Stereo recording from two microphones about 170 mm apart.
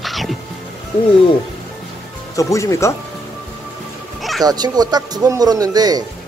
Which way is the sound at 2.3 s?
20° left (ahead or behind).